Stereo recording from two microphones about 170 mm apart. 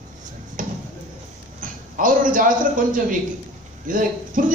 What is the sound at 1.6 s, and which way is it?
A man's voice, 50° right (ahead or behind).